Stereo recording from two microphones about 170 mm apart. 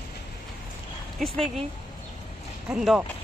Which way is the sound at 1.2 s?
5° left (ahead or behind).